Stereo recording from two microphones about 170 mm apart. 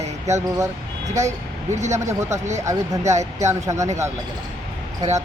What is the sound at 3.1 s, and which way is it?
Speech, 45° right (ahead or behind).